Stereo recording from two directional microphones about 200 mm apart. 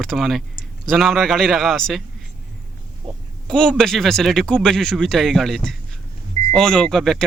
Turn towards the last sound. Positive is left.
turn(degrees=0)  # may be behind; listen again after turning